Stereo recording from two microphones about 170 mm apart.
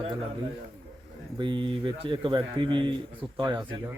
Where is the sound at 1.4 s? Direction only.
30° right (ahead or behind).